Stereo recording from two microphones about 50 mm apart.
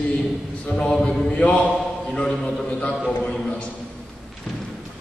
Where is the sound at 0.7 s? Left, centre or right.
Centre.